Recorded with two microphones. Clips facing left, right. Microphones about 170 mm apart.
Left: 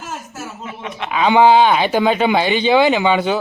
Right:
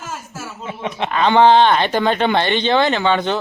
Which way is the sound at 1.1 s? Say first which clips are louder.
Left 1 dB; 10° left (ahead or behind).